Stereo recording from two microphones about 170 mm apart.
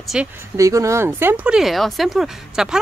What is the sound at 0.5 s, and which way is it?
Speech, 20° right (ahead or behind).